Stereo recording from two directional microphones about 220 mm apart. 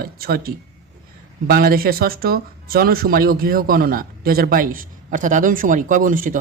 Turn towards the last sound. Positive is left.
turn(degrees=-40)  # may be behind; listen again after turning